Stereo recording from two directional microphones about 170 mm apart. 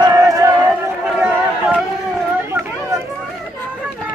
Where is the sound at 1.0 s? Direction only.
Centre (ahead or behind).